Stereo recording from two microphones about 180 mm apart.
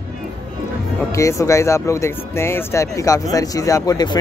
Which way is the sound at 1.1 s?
15° left (ahead or behind).